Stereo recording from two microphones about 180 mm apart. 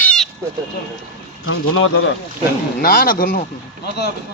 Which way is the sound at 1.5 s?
90° left.